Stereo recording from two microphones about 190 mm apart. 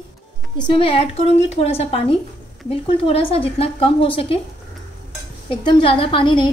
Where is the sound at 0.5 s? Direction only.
25° left (ahead or behind).